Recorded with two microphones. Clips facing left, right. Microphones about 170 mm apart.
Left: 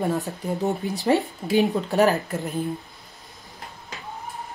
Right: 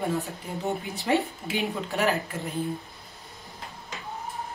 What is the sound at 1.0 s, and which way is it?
Speech, 40° left (ahead or behind).